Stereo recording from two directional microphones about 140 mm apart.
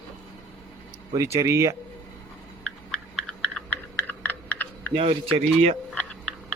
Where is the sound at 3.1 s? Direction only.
5° left (ahead or behind).